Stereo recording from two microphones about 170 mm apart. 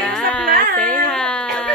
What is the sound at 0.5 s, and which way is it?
Carnatic music, 60° right (ahead or behind).